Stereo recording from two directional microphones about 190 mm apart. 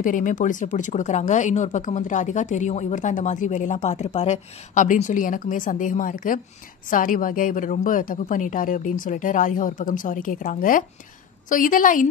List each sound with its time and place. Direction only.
0.0 s a woman's voice: 45° left (ahead or behind)